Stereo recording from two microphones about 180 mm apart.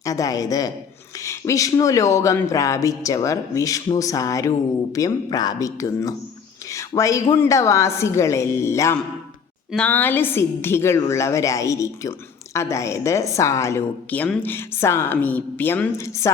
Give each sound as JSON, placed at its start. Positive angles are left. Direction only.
{"t": 0.0, "sound": "a woman's voice", "side_deg": 20}